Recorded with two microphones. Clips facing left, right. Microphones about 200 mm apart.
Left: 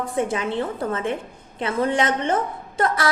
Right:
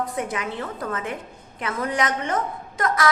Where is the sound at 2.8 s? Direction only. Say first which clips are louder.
Left 3 dB; 30° left (ahead or behind).